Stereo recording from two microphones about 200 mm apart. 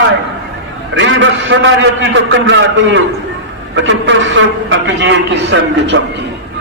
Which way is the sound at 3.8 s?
65° right (ahead or behind).